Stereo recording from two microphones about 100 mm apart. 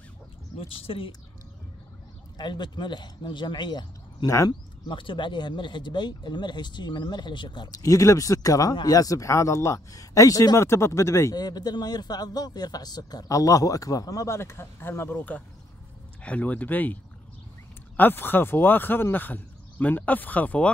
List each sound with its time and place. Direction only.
0.6 s a woman's voice: 65° left (ahead or behind)
2.3 s speech: 45° left (ahead or behind)
7.8 s speech: 35° left (ahead or behind)
11.3 s speech: 45° left (ahead or behind); by 20.7 s 15° left (ahead or behind)